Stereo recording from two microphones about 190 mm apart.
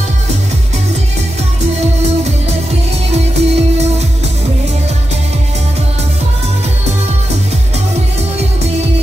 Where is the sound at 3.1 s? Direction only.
35° right (ahead or behind).